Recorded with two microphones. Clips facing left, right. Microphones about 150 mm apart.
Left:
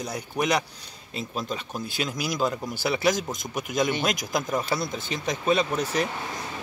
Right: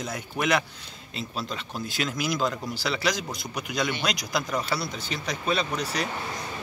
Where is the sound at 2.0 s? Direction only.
40° left (ahead or behind).